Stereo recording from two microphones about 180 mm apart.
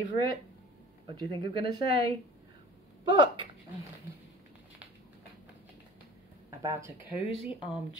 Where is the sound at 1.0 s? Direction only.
25° right (ahead or behind).